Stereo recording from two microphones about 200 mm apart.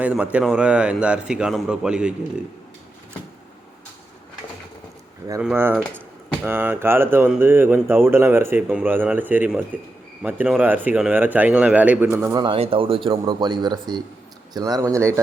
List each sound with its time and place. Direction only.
0.0 s speech: 5° right (ahead or behind)
5.4 s a man's voice: 10° right (ahead or behind)